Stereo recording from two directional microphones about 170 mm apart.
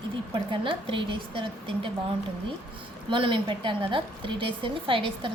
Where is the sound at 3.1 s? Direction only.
30° right (ahead or behind).